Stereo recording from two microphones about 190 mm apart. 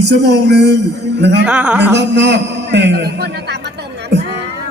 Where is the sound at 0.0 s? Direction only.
60° right (ahead or behind).